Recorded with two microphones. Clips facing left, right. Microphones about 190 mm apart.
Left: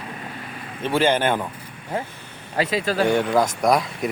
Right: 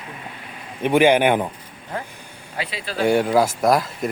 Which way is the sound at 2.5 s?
45° left (ahead or behind).